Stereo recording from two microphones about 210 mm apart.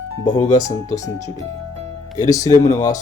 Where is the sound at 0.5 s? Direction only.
15° left (ahead or behind).